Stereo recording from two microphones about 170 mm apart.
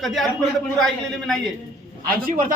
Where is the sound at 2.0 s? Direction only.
55° right (ahead or behind).